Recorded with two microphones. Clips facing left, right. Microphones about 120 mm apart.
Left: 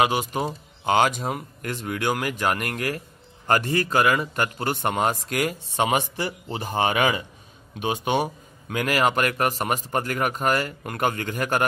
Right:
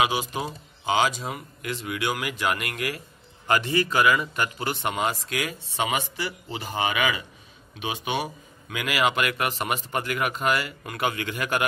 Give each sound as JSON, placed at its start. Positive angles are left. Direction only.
{"t": 0.0, "sound": "speech", "side_deg": 45}